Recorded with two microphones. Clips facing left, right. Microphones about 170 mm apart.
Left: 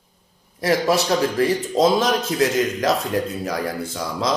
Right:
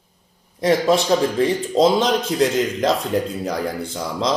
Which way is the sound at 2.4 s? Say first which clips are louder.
Even; 25° right (ahead or behind).